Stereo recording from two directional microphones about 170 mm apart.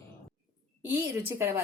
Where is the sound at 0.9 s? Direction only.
15° right (ahead or behind).